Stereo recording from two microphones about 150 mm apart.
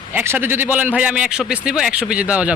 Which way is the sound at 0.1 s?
15° right (ahead or behind).